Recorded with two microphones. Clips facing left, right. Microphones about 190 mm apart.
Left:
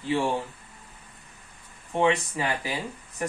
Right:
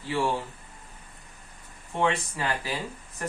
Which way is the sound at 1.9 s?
15° left (ahead or behind).